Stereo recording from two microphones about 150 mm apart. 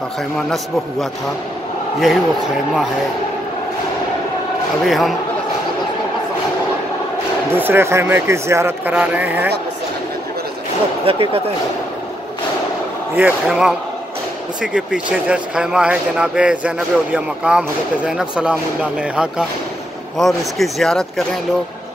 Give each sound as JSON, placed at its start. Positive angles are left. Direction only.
{"t": 2.0, "sound": "speech", "side_deg": 0}
{"t": 4.8, "sound": "speech", "side_deg": 0}
{"t": 7.5, "sound": "speech", "side_deg": -15}
{"t": 11.1, "sound": "speech", "side_deg": -40}
{"t": 13.1, "sound": "speech", "side_deg": -5}